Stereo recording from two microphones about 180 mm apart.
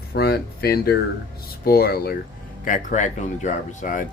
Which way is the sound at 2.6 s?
45° left (ahead or behind).